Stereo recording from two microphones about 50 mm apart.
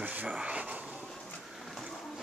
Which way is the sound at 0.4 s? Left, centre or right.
Right.